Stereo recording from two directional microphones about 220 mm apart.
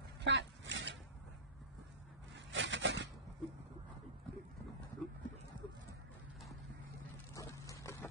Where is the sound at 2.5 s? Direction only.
55° right (ahead or behind).